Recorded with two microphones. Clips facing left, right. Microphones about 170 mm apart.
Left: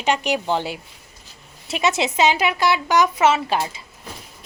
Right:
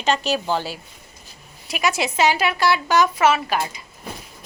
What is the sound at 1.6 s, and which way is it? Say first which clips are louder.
Speech: left 2 dB; 25° left (ahead or behind).